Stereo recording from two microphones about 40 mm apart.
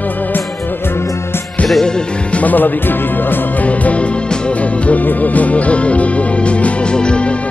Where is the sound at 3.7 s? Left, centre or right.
Left.